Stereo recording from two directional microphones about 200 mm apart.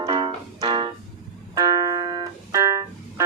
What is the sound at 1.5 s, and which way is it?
Keyboard, 20° right (ahead or behind).